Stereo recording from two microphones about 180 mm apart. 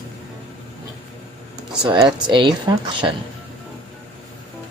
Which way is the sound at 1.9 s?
25° right (ahead or behind).